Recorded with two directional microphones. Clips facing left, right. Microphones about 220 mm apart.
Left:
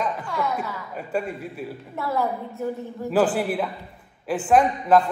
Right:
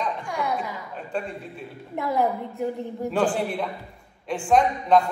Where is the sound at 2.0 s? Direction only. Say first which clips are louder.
Right 2 dB; 15° right (ahead or behind).